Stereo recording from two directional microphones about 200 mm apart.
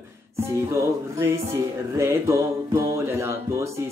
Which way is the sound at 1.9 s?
15° right (ahead or behind).